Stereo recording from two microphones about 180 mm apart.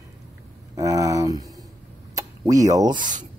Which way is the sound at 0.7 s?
20° right (ahead or behind).